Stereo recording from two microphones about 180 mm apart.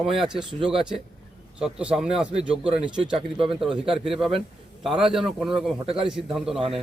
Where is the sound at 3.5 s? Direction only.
Centre (ahead or behind).